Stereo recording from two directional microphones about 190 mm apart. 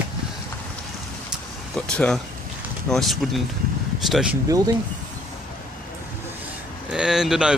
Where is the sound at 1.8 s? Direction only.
5° left (ahead or behind).